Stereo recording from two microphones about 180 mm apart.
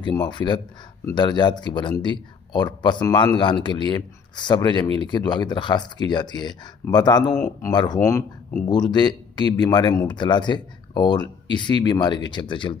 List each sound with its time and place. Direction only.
0.0 s speech: 25° left (ahead or behind)